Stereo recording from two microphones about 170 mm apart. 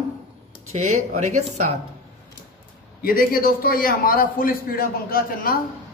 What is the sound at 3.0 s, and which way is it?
A man's voice, 60° left (ahead or behind).